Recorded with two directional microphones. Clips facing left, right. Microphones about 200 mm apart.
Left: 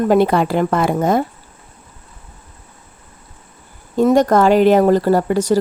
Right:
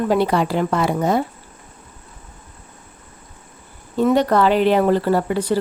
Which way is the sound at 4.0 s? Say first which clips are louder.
Left 3 dB; 45° left (ahead or behind).